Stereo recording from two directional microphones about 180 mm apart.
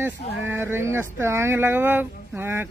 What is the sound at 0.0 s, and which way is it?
Speech, 10° right (ahead or behind).